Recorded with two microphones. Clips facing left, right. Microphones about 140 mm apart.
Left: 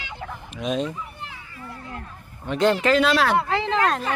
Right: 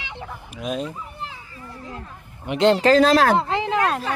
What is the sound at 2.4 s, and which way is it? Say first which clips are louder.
Speech: right 3 dB; 20° right (ahead or behind).